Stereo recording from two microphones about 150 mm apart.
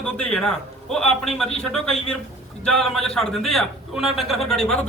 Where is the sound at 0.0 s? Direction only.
5° left (ahead or behind).